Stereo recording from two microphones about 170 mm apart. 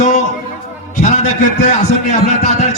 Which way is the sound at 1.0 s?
45° left (ahead or behind).